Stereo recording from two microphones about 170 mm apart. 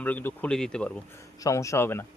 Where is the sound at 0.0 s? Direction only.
10° left (ahead or behind).